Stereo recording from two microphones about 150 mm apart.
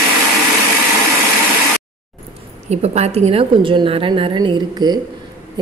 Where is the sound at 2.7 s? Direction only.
45° right (ahead or behind).